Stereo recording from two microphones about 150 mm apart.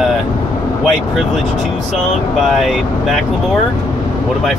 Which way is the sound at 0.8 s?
Centre (ahead or behind).